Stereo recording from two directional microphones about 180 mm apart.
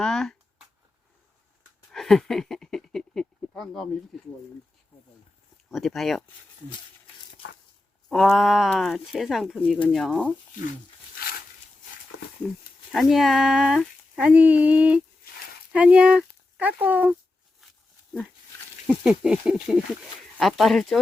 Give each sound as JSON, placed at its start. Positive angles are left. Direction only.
{"t": 0.0, "sound": "speech", "side_deg": 5}
{"t": 1.9, "sound": "a sound", "side_deg": 0}
{"t": 5.7, "sound": "speech", "side_deg": 0}
{"t": 8.1, "sound": "speech", "side_deg": 0}
{"t": 12.9, "sound": "speech", "side_deg": 0}
{"t": 18.9, "sound": "speech", "side_deg": -5}